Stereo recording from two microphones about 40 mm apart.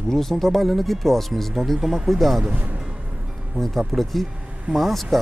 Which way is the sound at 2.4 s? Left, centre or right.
Right.